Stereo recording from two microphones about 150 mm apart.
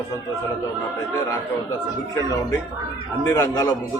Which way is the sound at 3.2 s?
25° left (ahead or behind).